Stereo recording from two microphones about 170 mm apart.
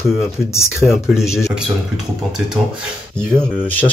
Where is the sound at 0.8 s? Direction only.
Centre (ahead or behind).